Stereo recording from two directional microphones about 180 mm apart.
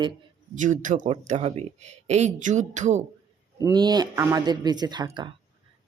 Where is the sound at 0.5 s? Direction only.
45° right (ahead or behind).